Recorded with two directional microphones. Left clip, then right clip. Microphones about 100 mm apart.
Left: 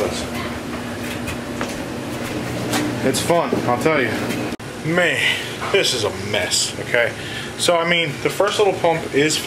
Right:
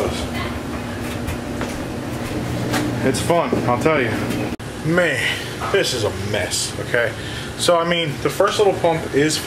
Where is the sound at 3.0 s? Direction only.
5° left (ahead or behind).